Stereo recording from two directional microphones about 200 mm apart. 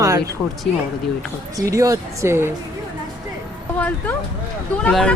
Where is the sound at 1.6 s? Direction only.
15° right (ahead or behind).